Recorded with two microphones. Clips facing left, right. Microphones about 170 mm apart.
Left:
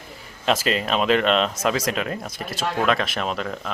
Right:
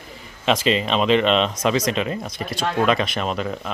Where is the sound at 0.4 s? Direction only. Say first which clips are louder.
Right 2 dB; centre (ahead or behind).